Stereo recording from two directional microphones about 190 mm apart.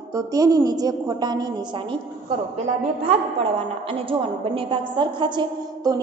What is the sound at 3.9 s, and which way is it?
A woman's voice, 30° right (ahead or behind).